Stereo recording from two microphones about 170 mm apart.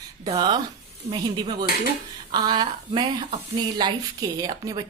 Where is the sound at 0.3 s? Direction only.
25° right (ahead or behind).